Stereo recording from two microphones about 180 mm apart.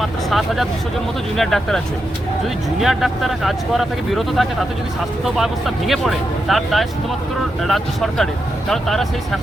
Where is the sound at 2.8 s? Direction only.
Centre (ahead or behind).